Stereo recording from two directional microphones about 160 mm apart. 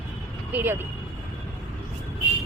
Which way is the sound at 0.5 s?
15° right (ahead or behind).